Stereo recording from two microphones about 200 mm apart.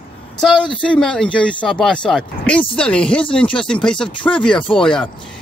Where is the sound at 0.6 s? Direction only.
25° left (ahead or behind).